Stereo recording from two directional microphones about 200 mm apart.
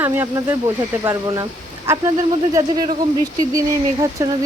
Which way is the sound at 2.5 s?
20° right (ahead or behind).